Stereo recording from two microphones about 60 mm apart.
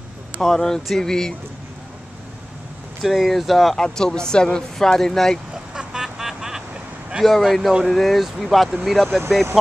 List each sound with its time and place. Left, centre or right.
0.4 s speech: centre
3.0 s speech: centre
5.8 s vehicle: centre
7.2 s speech: centre